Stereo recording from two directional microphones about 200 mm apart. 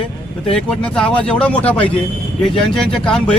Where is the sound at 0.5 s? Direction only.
5° left (ahead or behind).